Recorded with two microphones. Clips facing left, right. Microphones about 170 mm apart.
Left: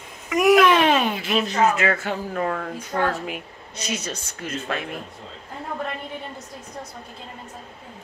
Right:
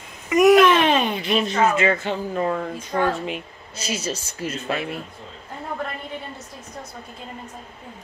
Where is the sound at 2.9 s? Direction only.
5° left (ahead or behind).